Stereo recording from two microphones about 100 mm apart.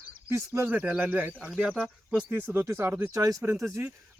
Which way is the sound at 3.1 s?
35° right (ahead or behind).